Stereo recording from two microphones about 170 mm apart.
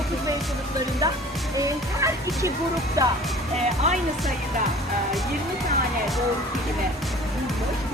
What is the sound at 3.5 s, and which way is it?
Speech, 40° right (ahead or behind).